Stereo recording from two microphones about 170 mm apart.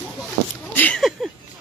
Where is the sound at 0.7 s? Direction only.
10° left (ahead or behind).